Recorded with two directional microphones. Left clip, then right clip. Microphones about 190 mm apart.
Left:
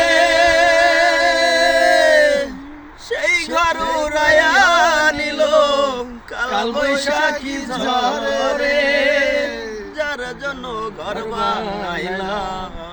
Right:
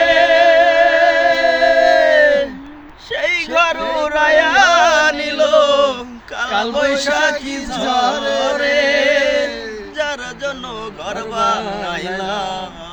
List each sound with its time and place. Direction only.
0.1 s music: 15° right (ahead or behind)
3.1 s a sound: 15° right (ahead or behind)
7.7 s music: 15° right (ahead or behind)
11.3 s mantra: 20° right (ahead or behind)